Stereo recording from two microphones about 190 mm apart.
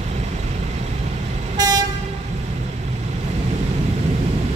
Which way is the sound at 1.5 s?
20° right (ahead or behind).